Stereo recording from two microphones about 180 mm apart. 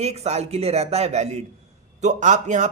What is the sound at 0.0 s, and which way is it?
A man's voice, 35° right (ahead or behind).